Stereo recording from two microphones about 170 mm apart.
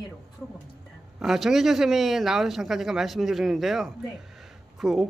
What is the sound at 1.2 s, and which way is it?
A man's voice, centre (ahead or behind).